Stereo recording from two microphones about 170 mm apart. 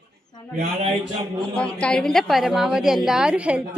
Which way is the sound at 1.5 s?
5° left (ahead or behind).